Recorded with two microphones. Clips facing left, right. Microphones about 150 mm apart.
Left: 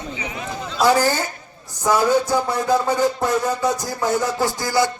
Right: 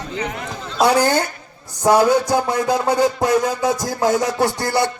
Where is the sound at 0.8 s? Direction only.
70° right (ahead or behind).